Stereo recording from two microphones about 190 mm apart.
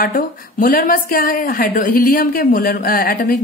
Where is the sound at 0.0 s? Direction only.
50° left (ahead or behind).